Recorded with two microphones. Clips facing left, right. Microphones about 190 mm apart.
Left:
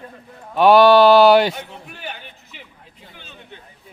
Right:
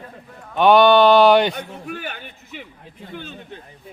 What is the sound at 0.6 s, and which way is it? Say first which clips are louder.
Speech: left 2 dB; centre (ahead or behind).